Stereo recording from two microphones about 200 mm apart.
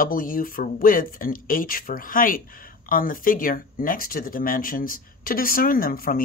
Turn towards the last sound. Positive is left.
turn(degrees=45)  # may be behind; listen again after turning